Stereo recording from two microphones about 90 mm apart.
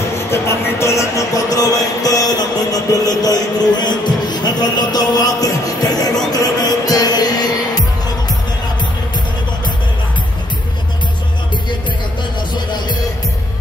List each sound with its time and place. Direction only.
0.3 s music: 30° left (ahead or behind); by 7.8 s 50° left (ahead or behind)